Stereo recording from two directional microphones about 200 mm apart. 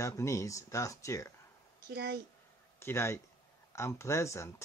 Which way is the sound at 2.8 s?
15° left (ahead or behind).